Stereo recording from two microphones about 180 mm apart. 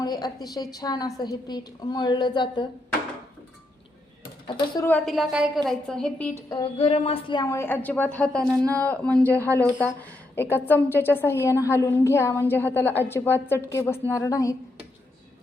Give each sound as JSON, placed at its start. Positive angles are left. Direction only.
{"t": 0.0, "sound": "a woman's voice", "side_deg": 20}
{"t": 4.4, "sound": "a woman's voice", "side_deg": 25}
{"t": 4.9, "sound": "a woman's voice", "side_deg": 5}
{"t": 6.5, "sound": "a woman's voice", "side_deg": 30}